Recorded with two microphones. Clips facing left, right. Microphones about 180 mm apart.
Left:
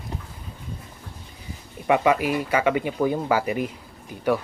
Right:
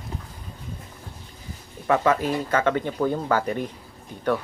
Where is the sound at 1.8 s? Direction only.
15° left (ahead or behind).